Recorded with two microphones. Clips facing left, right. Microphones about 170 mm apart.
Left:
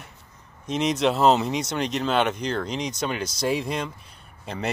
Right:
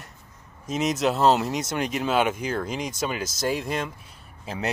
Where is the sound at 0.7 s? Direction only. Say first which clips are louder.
Left 1 dB; 5° right (ahead or behind).